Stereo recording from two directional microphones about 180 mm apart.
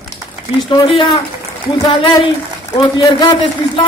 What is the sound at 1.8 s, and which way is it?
Speech, 25° left (ahead or behind).